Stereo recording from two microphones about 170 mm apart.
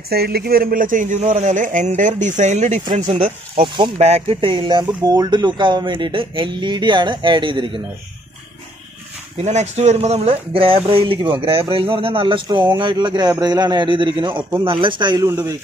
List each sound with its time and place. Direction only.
0.1 s a man's voice: 65° right (ahead or behind); by 2.8 s 45° right (ahead or behind)
3.6 s speech: 30° right (ahead or behind)
9.4 s speech: 40° right (ahead or behind)
15.2 s speech: 15° right (ahead or behind)